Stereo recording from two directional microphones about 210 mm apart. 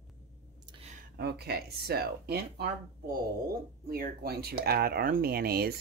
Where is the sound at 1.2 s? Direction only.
50° right (ahead or behind).